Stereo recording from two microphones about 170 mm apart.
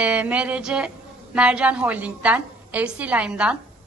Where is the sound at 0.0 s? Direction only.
10° right (ahead or behind).